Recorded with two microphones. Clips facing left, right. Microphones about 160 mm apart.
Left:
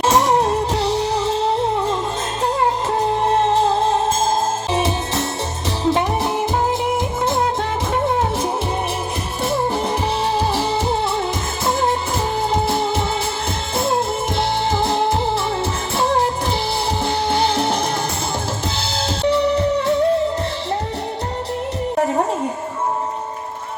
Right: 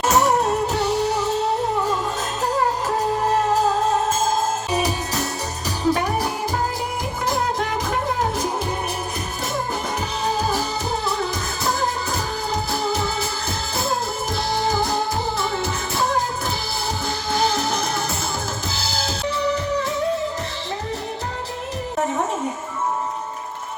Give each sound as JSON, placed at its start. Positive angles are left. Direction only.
{"t": 0.0, "sound": "music", "side_deg": 30}
{"t": 3.4, "sound": "music", "side_deg": 30}
{"t": 8.0, "sound": "music", "side_deg": 25}
{"t": 10.3, "sound": "music", "side_deg": 30}
{"t": 18.8, "sound": "music", "side_deg": 30}